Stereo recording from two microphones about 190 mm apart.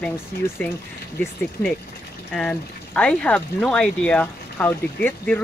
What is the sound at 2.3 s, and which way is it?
Speech, 5° left (ahead or behind).